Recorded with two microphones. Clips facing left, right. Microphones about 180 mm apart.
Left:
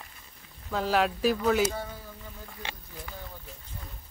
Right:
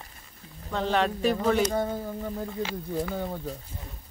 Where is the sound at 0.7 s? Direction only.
5° left (ahead or behind).